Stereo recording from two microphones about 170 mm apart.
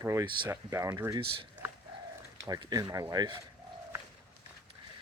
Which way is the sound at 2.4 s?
20° right (ahead or behind).